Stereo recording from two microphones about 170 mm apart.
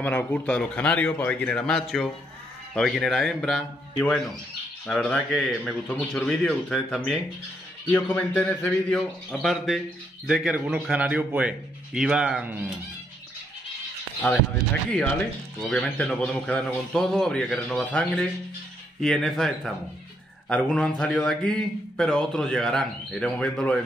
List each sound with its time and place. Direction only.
0.0 s a man's voice: 10° left (ahead or behind); by 12.6 s 10° right (ahead or behind)
14.2 s a man's voice: 5° left (ahead or behind)